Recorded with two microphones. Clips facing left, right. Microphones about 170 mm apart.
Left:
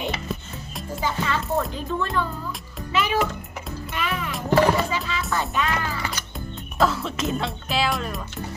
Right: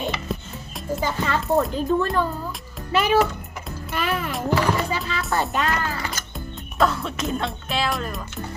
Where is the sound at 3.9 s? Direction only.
40° right (ahead or behind).